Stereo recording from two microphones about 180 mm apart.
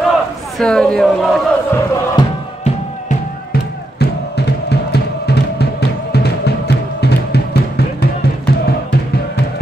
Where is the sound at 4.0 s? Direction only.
65° left (ahead or behind).